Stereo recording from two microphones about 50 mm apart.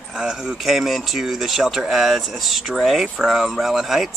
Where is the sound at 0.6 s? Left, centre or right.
Centre.